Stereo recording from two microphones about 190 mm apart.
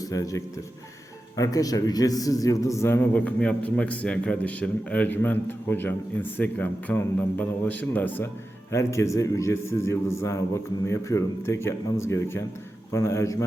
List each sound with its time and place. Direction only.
0.0 s a man's voice: 20° left (ahead or behind)